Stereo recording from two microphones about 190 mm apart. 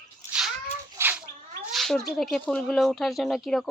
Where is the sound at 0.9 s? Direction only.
10° right (ahead or behind).